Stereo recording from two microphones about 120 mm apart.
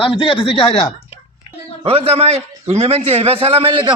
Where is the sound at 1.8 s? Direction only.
50° right (ahead or behind).